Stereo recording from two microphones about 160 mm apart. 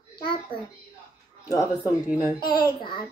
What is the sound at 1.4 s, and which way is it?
Speech, 20° left (ahead or behind).